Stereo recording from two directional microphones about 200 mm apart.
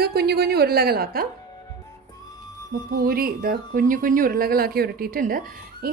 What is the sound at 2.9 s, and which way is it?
A woman's voice, 45° right (ahead or behind).